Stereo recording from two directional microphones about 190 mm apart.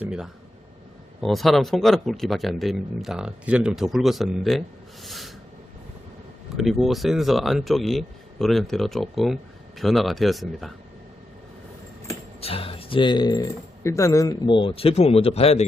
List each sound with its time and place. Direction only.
0.0 s speech: 5° right (ahead or behind)
5.0 s a sound: centre (ahead or behind)
6.6 s speech: centre (ahead or behind)
12.4 s speech: 30° left (ahead or behind)